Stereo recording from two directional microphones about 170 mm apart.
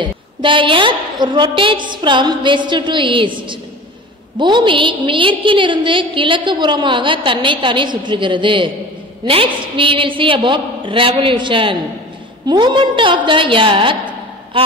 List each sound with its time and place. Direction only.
0.0 s a woman's voice: 30° right (ahead or behind)